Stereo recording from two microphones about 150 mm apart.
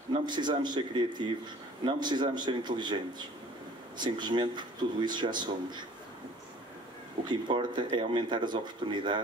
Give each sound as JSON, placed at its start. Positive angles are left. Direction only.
{"t": 0.3, "sound": "speech", "side_deg": -30}
{"t": 4.0, "sound": "speech", "side_deg": -30}
{"t": 7.2, "sound": "speech", "side_deg": -30}